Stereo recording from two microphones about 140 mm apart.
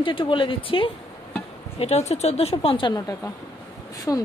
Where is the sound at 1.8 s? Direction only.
50° left (ahead or behind).